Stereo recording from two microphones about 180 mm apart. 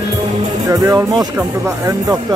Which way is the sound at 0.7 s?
20° right (ahead or behind).